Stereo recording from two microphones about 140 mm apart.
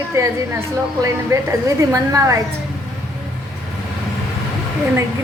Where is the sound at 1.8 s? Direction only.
25° right (ahead or behind).